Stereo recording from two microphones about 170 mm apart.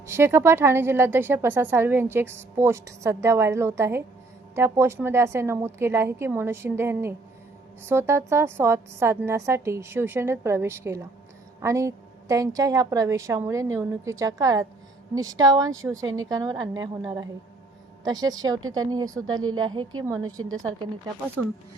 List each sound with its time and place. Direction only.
0.0 s a woman's voice: 15° right (ahead or behind)